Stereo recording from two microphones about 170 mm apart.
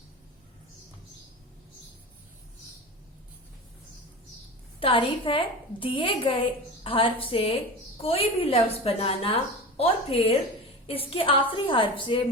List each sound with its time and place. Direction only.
4.8 s a woman's voice: 30° left (ahead or behind)